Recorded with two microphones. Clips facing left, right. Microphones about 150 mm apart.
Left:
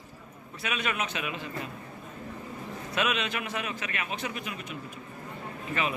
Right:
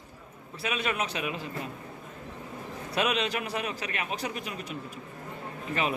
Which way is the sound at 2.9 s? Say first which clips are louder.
Right 2 dB; 35° right (ahead or behind).